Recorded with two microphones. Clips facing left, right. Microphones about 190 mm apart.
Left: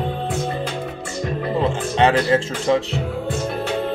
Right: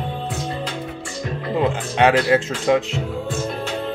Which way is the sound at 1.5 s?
15° right (ahead or behind).